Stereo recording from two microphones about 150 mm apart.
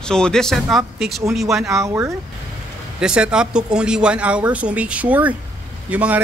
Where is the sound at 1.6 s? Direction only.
20° right (ahead or behind).